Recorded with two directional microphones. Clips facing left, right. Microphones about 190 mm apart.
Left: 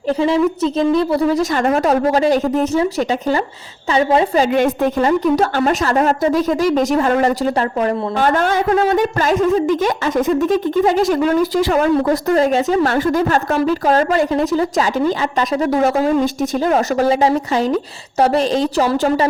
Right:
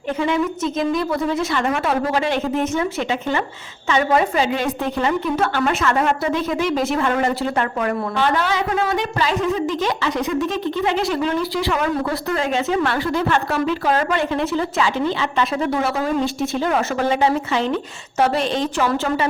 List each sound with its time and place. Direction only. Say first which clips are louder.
0.1 s a woman's voice: left 5 dB; 35° left (ahead or behind)
4.4 s speech: left 6 dB; 50° left (ahead or behind); by 8.2 s 35° left (ahead or behind)
8.2 s a woman's voice: left 5 dB; 45° left (ahead or behind)